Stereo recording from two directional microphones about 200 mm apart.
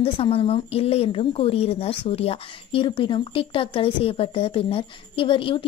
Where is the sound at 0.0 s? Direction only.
30° left (ahead or behind).